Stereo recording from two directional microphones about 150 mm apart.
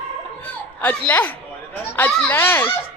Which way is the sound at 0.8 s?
10° left (ahead or behind).